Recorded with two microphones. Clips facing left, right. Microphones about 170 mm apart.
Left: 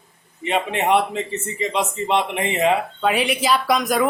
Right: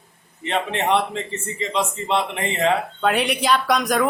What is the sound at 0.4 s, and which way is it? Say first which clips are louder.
A man's voice: left 2 dB; 10° left (ahead or behind).